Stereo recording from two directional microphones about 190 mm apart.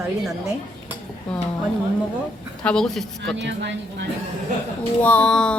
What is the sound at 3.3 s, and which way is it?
Speech, 65° right (ahead or behind).